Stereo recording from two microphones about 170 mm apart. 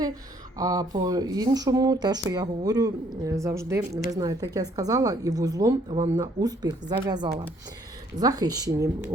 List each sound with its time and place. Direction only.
0.5 s speech: 20° right (ahead or behind)